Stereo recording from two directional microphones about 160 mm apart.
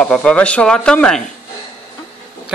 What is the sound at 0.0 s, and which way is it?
Speech, 5° left (ahead or behind).